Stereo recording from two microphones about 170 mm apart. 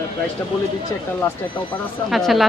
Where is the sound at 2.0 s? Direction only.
Centre (ahead or behind).